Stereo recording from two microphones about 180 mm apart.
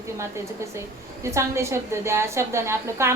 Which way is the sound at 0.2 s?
15° right (ahead or behind).